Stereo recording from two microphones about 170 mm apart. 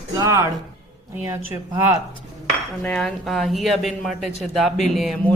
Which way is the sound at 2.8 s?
5° left (ahead or behind).